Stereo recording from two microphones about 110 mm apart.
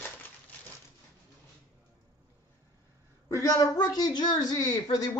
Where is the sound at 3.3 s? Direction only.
30° left (ahead or behind).